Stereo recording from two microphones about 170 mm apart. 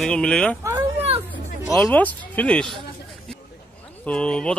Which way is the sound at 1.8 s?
10° left (ahead or behind).